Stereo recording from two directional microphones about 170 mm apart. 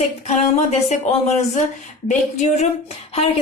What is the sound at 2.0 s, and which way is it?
Speech, 45° left (ahead or behind).